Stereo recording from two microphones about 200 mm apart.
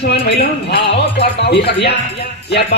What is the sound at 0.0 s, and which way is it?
Speech, 55° left (ahead or behind).